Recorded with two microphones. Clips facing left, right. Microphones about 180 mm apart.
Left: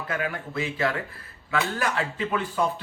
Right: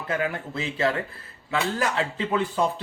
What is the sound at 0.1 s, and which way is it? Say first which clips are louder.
Speech: right 3 dB; 25° right (ahead or behind).